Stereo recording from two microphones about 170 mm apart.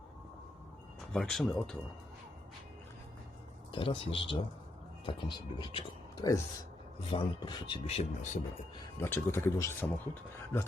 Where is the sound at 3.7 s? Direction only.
30° left (ahead or behind).